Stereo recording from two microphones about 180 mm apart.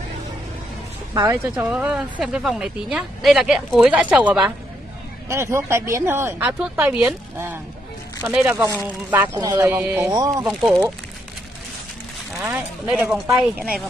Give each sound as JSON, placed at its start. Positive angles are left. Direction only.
{"t": 1.1, "sound": "speech", "side_deg": -20}
{"t": 1.5, "sound": "speech", "side_deg": -5}
{"t": 9.4, "sound": "speech", "side_deg": -20}
{"t": 9.7, "sound": "speech", "side_deg": -10}
{"t": 10.4, "sound": "speech", "side_deg": -5}
{"t": 12.4, "sound": "speech", "side_deg": -10}